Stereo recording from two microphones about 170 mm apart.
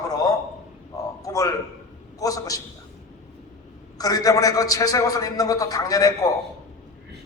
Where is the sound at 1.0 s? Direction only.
20° left (ahead or behind).